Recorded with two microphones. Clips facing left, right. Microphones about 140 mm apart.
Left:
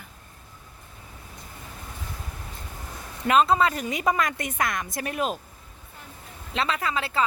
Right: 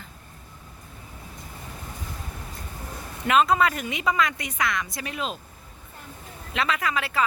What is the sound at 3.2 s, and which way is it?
A woman's voice, 35° left (ahead or behind).